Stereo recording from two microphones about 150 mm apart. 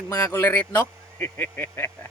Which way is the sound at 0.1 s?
20° left (ahead or behind).